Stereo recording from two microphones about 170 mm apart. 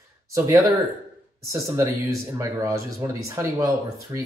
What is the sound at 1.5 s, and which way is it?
Speech, 20° right (ahead or behind).